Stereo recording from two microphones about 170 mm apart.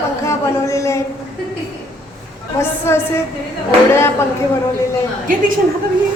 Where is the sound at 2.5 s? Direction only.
15° left (ahead or behind).